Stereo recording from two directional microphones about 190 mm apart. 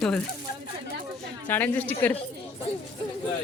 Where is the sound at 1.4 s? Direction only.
10° left (ahead or behind).